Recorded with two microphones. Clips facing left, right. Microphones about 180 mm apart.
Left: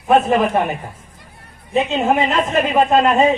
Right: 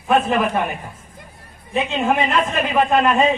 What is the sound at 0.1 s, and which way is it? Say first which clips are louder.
Speech: left 3 dB; 25° left (ahead or behind).